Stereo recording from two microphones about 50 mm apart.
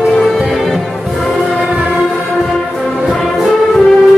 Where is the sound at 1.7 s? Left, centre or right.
Right.